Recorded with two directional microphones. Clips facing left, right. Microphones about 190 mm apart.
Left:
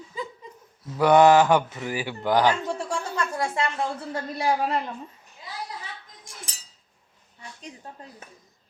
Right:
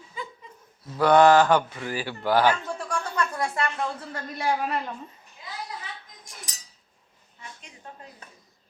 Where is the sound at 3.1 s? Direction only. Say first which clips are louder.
Even; 25° left (ahead or behind).